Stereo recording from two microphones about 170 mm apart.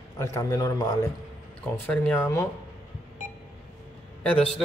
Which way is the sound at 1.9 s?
5° left (ahead or behind).